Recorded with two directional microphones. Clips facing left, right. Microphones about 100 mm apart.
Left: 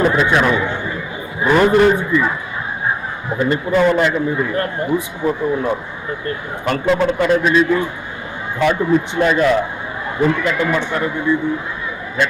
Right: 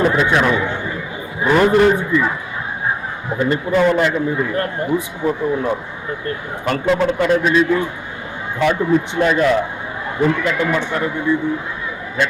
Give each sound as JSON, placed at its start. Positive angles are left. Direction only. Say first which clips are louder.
{"t": 0.0, "sound": "a man's voice", "louder": "left 1 dB", "side_deg": 25}